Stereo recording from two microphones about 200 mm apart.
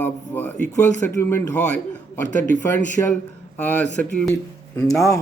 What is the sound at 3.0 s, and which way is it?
Speech, 15° left (ahead or behind).